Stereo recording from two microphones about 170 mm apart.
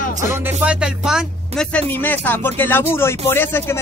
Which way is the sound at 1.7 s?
10° left (ahead or behind).